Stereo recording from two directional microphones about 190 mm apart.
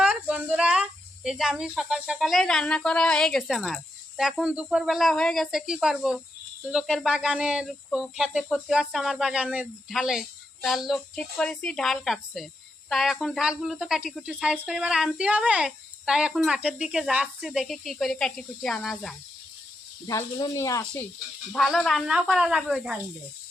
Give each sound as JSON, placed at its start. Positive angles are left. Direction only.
{"t": 0.0, "sound": "speech", "side_deg": -5}
{"t": 4.2, "sound": "cricket", "side_deg": 0}
{"t": 20.1, "sound": "speech", "side_deg": 20}
{"t": 21.5, "sound": "cricket", "side_deg": 5}